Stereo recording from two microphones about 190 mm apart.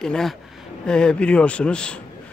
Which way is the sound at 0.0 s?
Centre (ahead or behind).